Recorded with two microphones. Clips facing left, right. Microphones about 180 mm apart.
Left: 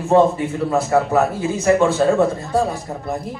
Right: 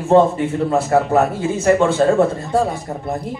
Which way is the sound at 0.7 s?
25° right (ahead or behind).